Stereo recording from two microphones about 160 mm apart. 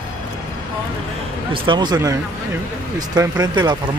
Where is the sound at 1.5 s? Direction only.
30° right (ahead or behind).